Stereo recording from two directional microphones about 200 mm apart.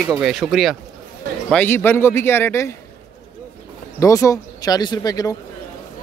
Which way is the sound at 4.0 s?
15° left (ahead or behind).